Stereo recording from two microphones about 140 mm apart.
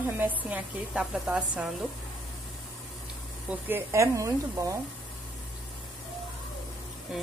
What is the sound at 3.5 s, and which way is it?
Speech, 15° right (ahead or behind).